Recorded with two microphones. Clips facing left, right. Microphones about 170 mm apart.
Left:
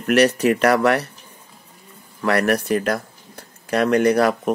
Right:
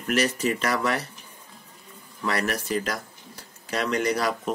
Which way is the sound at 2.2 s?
60° left (ahead or behind).